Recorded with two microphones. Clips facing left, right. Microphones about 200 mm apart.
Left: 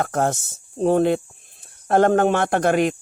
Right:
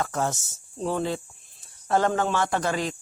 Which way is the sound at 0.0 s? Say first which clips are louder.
Left 6 dB; 60° left (ahead or behind).